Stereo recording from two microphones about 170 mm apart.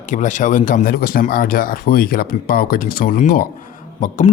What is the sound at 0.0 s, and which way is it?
A man's voice, 45° left (ahead or behind).